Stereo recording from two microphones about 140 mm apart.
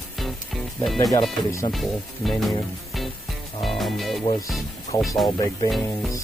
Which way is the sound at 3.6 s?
Centre (ahead or behind).